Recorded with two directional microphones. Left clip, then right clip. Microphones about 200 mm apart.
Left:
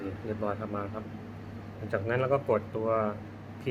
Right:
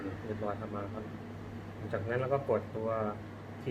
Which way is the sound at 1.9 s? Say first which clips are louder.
Left 5 dB; 25° left (ahead or behind).